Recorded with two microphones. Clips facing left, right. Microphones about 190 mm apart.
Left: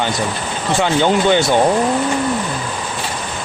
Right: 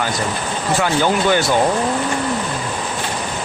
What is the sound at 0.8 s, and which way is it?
Speech, 20° left (ahead or behind).